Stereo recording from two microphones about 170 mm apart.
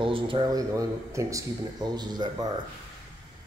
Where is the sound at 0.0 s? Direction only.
30° right (ahead or behind).